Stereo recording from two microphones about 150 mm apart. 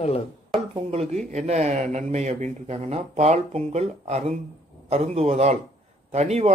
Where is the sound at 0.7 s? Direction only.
40° right (ahead or behind).